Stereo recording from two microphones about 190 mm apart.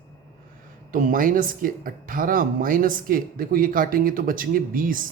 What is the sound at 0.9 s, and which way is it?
Speech, 45° right (ahead or behind).